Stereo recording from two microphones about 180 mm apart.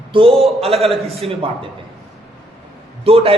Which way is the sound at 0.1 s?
30° right (ahead or behind).